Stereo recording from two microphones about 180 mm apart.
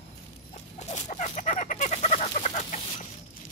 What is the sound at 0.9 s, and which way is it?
Chicken, 40° left (ahead or behind).